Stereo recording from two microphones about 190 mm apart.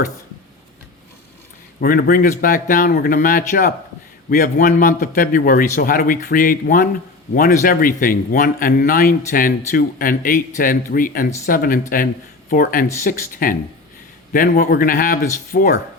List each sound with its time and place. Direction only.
1.8 s a man's voice: 50° left (ahead or behind)